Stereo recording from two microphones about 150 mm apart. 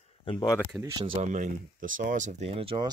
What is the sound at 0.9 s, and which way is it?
Speech, 35° right (ahead or behind).